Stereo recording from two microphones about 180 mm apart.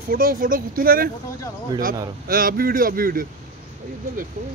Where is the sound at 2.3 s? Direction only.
55° right (ahead or behind).